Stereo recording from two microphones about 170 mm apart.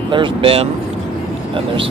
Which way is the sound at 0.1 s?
30° right (ahead or behind).